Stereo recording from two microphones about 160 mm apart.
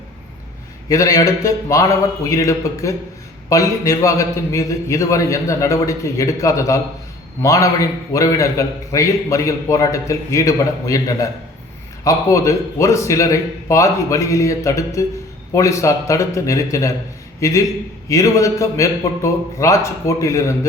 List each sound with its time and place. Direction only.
0.9 s a man's voice: 20° left (ahead or behind)